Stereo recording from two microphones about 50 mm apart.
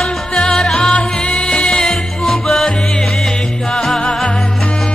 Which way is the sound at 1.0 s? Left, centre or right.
Left.